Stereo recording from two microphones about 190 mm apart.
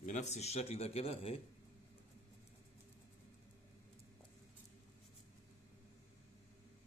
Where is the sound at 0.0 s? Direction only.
40° left (ahead or behind).